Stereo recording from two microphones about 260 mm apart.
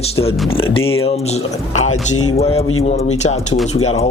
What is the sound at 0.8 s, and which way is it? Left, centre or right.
Speech, left.